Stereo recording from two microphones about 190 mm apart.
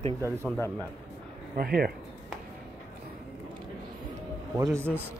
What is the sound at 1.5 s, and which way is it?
Speech, 50° right (ahead or behind).